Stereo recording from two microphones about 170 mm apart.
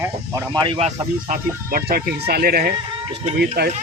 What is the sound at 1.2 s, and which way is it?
A man's voice, 55° right (ahead or behind).